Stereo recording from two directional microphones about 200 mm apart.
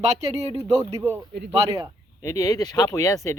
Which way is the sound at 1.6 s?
15° right (ahead or behind).